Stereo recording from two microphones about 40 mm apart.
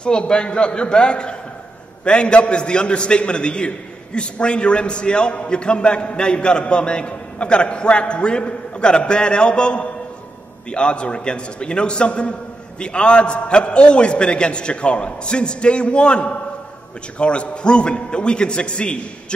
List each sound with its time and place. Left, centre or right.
0.0 s a man's voice: left